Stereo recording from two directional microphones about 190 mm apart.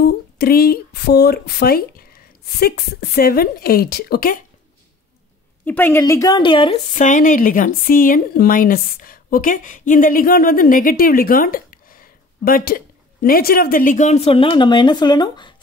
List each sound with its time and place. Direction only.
0.0 s speech: 55° left (ahead or behind)
5.7 s a woman's voice: 10° left (ahead or behind); by 6.8 s 25° left (ahead or behind)
7.0 s speech: 40° left (ahead or behind); by 15.5 s 25° left (ahead or behind)